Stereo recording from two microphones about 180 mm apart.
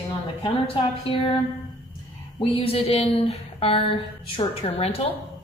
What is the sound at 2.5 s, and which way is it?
A woman's voice, 35° left (ahead or behind).